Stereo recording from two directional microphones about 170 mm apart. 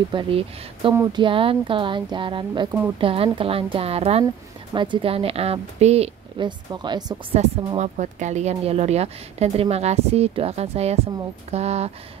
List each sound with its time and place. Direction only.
0.1 s speech: 30° right (ahead or behind)
7.3 s speech: 40° right (ahead or behind)